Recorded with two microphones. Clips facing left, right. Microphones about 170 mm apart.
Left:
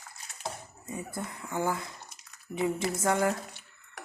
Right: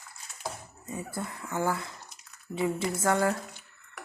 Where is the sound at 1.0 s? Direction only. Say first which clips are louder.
Right 1 dB; 20° left (ahead or behind).